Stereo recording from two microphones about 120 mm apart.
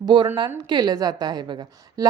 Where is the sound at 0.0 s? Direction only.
40° right (ahead or behind).